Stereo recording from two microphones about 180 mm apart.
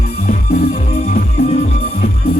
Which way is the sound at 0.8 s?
35° left (ahead or behind).